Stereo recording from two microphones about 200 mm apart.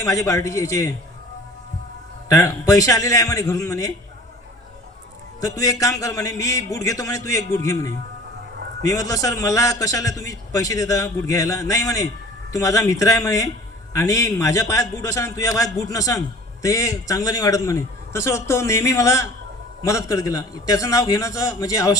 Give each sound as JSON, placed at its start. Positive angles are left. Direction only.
{"t": 0.0, "sound": "a man's voice", "side_deg": 15}
{"t": 2.3, "sound": "a man's voice", "side_deg": 15}
{"t": 5.4, "sound": "a man's voice", "side_deg": 15}